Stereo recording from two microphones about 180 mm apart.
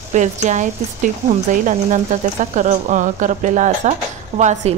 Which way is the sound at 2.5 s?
45° right (ahead or behind).